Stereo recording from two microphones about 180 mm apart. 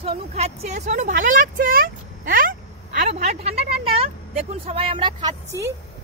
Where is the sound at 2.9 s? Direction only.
40° right (ahead or behind).